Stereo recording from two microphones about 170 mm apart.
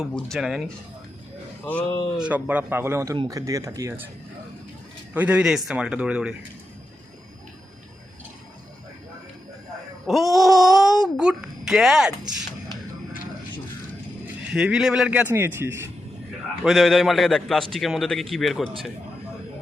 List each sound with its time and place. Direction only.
0.1 s speech: centre (ahead or behind)
1.6 s speech: 10° left (ahead or behind)
2.1 s a man's voice: 5° right (ahead or behind)
5.1 s speech: 10° right (ahead or behind)
10.1 s speech: centre (ahead or behind)
14.5 s a man's voice: 5° right (ahead or behind)
16.6 s speech: centre (ahead or behind)